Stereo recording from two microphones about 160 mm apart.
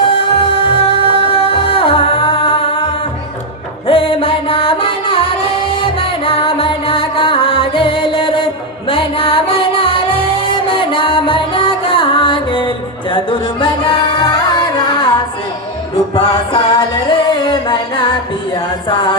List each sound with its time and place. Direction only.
0.0 s music: 35° left (ahead or behind)